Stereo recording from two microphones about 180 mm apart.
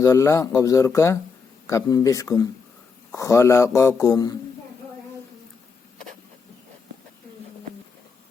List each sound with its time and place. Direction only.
0.0 s speech: 15° left (ahead or behind)